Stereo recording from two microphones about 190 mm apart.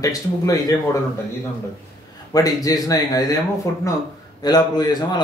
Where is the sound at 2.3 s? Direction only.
20° left (ahead or behind).